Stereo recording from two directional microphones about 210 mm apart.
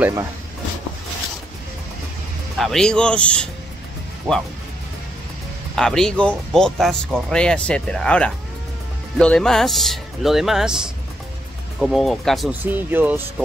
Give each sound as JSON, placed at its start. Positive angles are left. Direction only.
{"t": 0.0, "sound": "speech", "side_deg": -15}
{"t": 2.5, "sound": "speech", "side_deg": 0}
{"t": 5.8, "sound": "speech", "side_deg": 5}
{"t": 11.8, "sound": "speech", "side_deg": 0}